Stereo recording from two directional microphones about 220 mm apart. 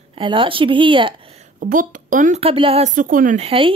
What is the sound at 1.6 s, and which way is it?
A woman's voice, 35° right (ahead or behind).